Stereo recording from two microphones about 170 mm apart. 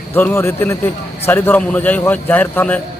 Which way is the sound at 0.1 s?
15° left (ahead or behind).